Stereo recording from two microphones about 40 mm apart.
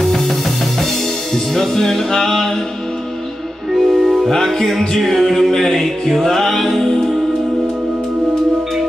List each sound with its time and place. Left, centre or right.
0.0 s music: centre
3.7 s music: centre
4.3 s music: centre